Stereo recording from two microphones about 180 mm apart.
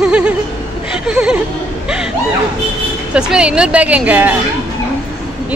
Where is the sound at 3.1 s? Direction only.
5° right (ahead or behind).